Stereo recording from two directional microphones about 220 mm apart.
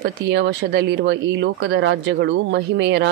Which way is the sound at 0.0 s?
50° right (ahead or behind).